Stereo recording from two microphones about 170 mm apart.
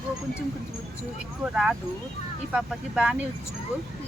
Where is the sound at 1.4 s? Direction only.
5° right (ahead or behind).